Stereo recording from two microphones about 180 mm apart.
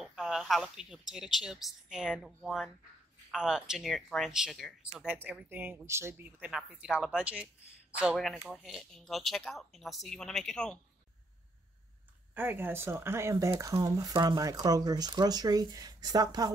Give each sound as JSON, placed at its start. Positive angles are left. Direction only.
{"t": 0.0, "sound": "a sound", "side_deg": 0}
{"t": 1.1, "sound": "speech", "side_deg": -5}
{"t": 12.4, "sound": "speech", "side_deg": -10}